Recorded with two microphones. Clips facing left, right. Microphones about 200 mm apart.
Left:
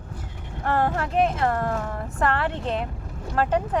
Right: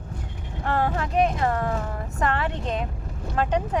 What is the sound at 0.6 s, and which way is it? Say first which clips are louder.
Speech: left 1 dB; 5° right (ahead or behind).